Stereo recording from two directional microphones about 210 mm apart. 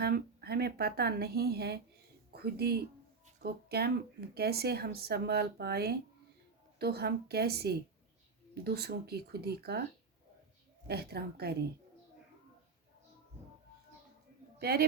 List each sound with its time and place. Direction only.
0.0 s speech: 50° right (ahead or behind)
10.8 s speech: 50° right (ahead or behind)
14.6 s speech: 45° right (ahead or behind)